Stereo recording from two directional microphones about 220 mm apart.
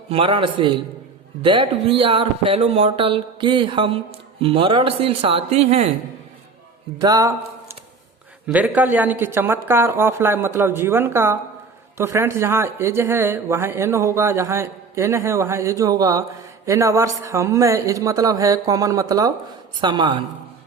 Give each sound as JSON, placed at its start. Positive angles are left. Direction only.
{"t": 0.1, "sound": "speech", "side_deg": -25}
{"t": 7.0, "sound": "speech", "side_deg": -15}